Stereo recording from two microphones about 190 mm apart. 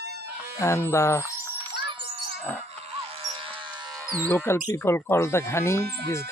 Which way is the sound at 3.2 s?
25° right (ahead or behind).